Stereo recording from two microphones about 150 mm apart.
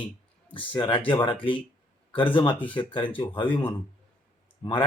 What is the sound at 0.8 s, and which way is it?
A man's voice, 35° left (ahead or behind).